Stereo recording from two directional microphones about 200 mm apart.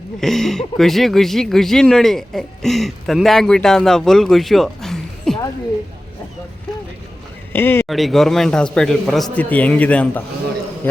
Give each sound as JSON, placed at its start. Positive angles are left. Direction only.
{"t": 0.2, "sound": "speech", "side_deg": 0}
{"t": 7.5, "sound": "a man's voice", "side_deg": 10}
{"t": 7.9, "sound": "a man's voice", "side_deg": 0}